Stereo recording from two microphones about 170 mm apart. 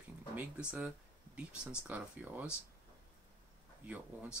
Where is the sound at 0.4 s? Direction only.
5° right (ahead or behind).